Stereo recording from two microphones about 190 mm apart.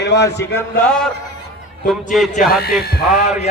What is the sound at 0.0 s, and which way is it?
Speech, 65° left (ahead or behind).